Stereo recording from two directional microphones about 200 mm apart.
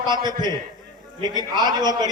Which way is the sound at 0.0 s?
20° right (ahead or behind).